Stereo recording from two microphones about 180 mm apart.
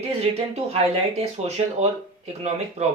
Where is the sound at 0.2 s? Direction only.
35° right (ahead or behind).